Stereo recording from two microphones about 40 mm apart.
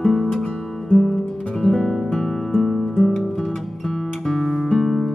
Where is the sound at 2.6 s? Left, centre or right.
Centre.